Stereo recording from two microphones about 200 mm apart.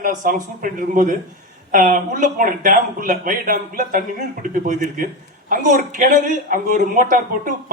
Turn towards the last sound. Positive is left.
turn(degrees=-40)  # may be behind; listen again after turning